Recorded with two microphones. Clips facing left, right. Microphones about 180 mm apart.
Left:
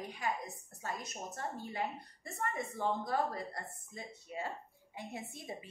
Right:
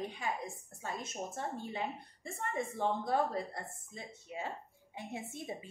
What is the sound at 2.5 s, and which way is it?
Speech, 25° right (ahead or behind).